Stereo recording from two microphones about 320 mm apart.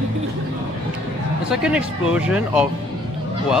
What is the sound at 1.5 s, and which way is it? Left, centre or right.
Speech, centre.